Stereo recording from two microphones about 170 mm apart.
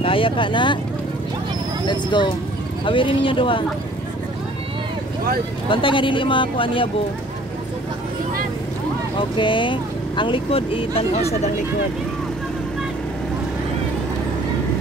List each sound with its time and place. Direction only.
0.0 s speech: 30° left (ahead or behind)
1.9 s speech: 25° left (ahead or behind)
5.7 s speech: 30° left (ahead or behind)
9.4 s speech: 30° left (ahead or behind)